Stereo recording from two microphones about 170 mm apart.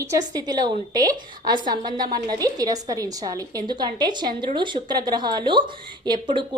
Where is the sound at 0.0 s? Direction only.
20° right (ahead or behind).